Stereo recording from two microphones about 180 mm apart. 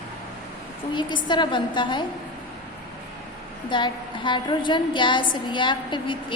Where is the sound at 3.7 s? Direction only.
25° left (ahead or behind).